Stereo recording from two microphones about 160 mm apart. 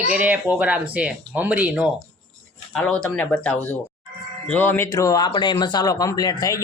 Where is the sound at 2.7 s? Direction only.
5° left (ahead or behind).